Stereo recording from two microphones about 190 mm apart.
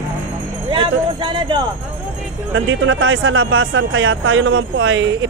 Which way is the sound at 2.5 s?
90° right.